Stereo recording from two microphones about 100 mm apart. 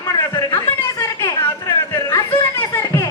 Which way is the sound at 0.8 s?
25° left (ahead or behind).